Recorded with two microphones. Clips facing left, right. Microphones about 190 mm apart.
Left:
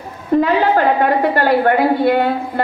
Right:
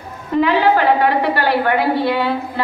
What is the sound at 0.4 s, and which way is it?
A woman's voice, 45° left (ahead or behind).